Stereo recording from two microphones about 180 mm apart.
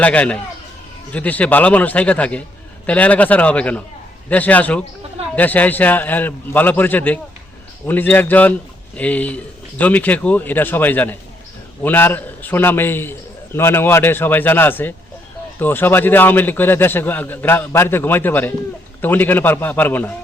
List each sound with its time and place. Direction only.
0.0 s a man's voice: 5° left (ahead or behind)